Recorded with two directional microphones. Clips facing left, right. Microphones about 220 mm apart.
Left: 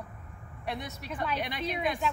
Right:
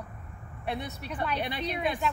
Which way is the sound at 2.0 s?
Centre (ahead or behind).